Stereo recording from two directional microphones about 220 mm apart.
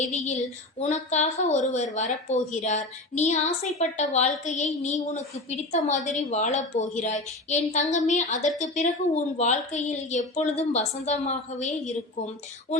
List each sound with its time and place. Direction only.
0.1 s a woman's voice: 35° left (ahead or behind)